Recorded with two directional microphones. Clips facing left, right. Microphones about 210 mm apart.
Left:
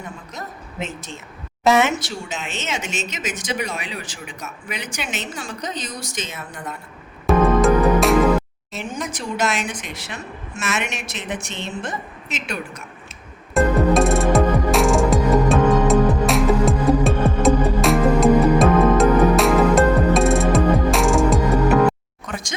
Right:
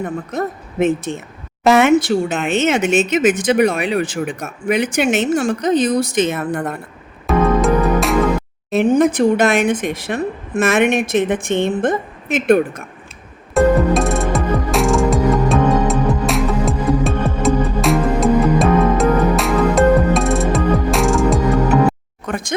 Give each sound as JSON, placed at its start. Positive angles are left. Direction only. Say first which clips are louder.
{"t": 0.0, "sound": "speech", "louder": "right 12 dB", "side_deg": -60}
{"t": 7.3, "sound": "music", "louder": "right 1 dB", "side_deg": 0}
{"t": 8.7, "sound": "speech", "louder": "right 16 dB", "side_deg": -60}
{"t": 13.5, "sound": "music", "louder": "right 3 dB", "side_deg": 0}
{"t": 22.3, "sound": "speech", "louder": "right 8 dB", "side_deg": -55}